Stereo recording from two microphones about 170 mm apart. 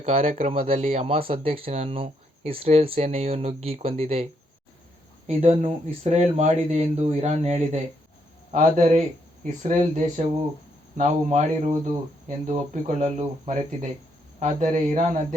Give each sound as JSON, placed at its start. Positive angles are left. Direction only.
{"t": 0.0, "sound": "speech", "side_deg": -35}
{"t": 5.4, "sound": "speech", "side_deg": -35}